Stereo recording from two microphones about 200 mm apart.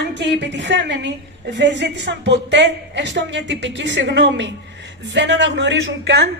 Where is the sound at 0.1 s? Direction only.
60° right (ahead or behind).